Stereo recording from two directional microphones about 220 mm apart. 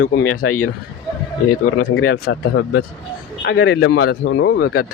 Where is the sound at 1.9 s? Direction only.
60° left (ahead or behind).